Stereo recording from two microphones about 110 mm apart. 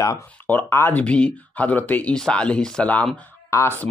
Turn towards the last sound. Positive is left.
turn(degrees=25)  # may be behind; listen again after turning